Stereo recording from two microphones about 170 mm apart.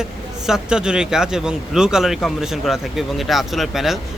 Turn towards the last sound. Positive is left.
turn(degrees=0)  # may be behind; listen again after turning